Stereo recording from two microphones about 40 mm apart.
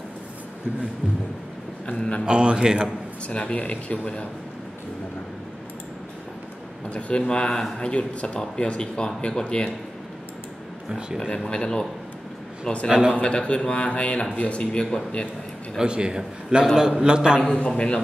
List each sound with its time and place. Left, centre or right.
1.9 s speech: left
2.2 s a man's voice: right
3.3 s speech: left
6.9 s speech: left
11.1 s speech: centre; by 14.6 s left
14.6 s speech: left
15.8 s a man's voice: right
17.4 s speech: left